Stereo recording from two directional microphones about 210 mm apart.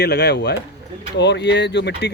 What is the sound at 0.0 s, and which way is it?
Speech, 50° left (ahead or behind).